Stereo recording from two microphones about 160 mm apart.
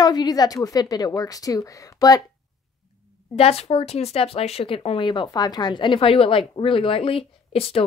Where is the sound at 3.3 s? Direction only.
40° left (ahead or behind).